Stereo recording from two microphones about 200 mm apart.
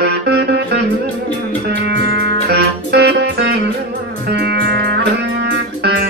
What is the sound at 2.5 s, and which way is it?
Music, 55° right (ahead or behind).